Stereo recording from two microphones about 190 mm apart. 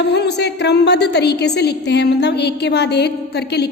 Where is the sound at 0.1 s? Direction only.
60° left (ahead or behind).